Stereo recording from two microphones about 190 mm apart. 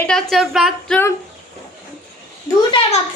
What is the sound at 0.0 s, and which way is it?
Speech, 5° left (ahead or behind).